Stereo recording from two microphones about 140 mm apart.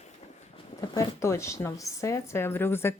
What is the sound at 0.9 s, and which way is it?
Speech, 20° left (ahead or behind).